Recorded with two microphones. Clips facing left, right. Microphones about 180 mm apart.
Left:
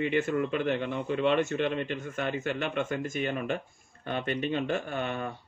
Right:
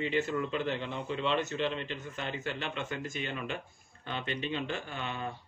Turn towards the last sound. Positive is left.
turn(degrees=50)  # may be behind; listen again after turning